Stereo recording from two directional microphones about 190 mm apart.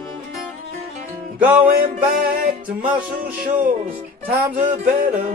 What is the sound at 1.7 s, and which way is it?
Music, 50° right (ahead or behind).